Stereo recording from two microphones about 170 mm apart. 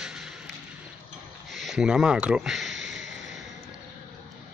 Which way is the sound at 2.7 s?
90° right.